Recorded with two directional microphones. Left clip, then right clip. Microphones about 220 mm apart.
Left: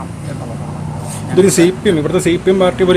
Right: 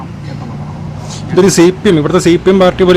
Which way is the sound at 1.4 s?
25° right (ahead or behind).